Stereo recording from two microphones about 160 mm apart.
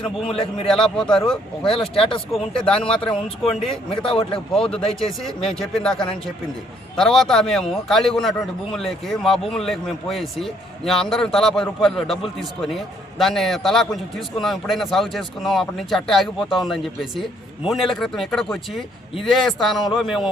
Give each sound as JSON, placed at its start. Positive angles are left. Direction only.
{"t": 0.0, "sound": "speech", "side_deg": 35}
{"t": 0.7, "sound": "a man's voice", "side_deg": 5}
{"t": 1.7, "sound": "speech", "side_deg": 35}
{"t": 2.6, "sound": "a man's voice", "side_deg": 5}
{"t": 3.2, "sound": "speech", "side_deg": 35}
{"t": 4.5, "sound": "a man's voice", "side_deg": 5}